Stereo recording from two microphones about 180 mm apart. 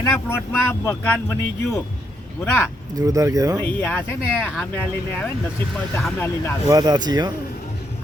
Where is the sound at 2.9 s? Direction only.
20° right (ahead or behind).